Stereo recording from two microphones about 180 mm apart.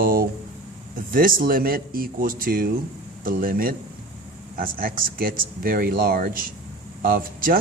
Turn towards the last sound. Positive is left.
turn(degrees=-50)  # may be behind; listen again after turning